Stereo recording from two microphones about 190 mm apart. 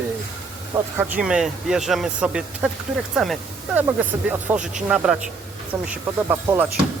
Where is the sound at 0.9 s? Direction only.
5° right (ahead or behind).